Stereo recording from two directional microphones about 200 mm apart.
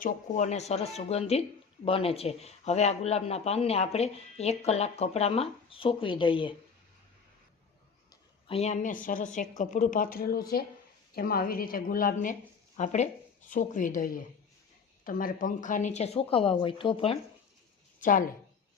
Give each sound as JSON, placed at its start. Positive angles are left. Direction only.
{"t": 0.0, "sound": "speech", "side_deg": 35}
{"t": 8.4, "sound": "a woman's voice", "side_deg": 30}